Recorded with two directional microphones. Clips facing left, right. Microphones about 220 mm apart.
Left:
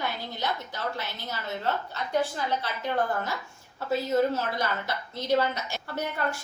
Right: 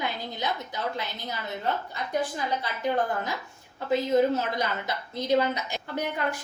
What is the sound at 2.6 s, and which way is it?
A woman's voice, 15° right (ahead or behind).